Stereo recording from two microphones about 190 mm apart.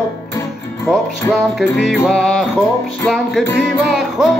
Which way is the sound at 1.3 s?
Centre (ahead or behind).